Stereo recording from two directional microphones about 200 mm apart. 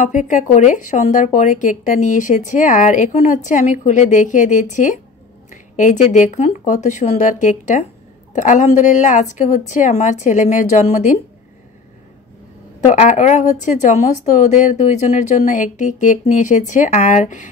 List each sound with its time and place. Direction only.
0.0 s speech: 35° left (ahead or behind)
12.8 s speech: 35° left (ahead or behind)